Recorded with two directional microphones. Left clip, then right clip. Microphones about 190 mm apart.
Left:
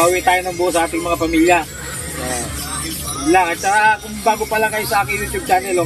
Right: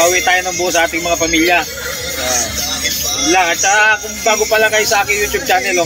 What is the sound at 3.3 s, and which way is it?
Speech, 5° left (ahead or behind).